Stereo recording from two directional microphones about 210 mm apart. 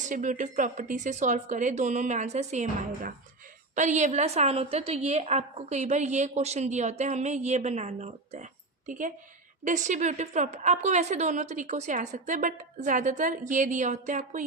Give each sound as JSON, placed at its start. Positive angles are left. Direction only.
{"t": 0.0, "sound": "a woman's voice", "side_deg": -35}